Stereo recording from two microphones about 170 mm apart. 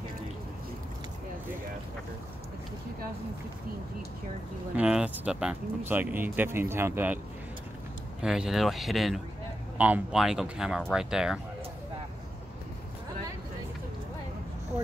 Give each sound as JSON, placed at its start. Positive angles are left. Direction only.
{"t": 4.7, "sound": "speech", "side_deg": -5}
{"t": 8.2, "sound": "speech", "side_deg": -5}